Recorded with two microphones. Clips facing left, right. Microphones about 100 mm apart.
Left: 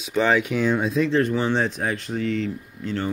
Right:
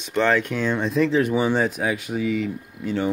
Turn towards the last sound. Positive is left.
turn(degrees=-10)  # may be behind; listen again after turning